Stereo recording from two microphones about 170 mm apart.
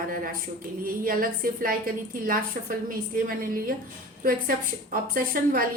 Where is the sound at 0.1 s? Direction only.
55° right (ahead or behind).